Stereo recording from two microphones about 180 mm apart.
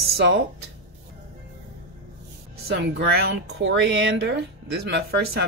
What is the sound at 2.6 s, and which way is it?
Speech, 70° right (ahead or behind).